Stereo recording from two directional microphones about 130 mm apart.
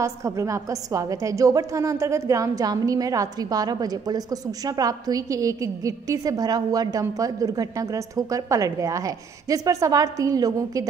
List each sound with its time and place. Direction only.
0.0 s a woman's voice: 25° right (ahead or behind)